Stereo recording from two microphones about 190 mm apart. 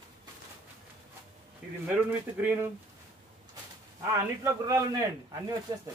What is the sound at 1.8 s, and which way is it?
Speech, 5° right (ahead or behind).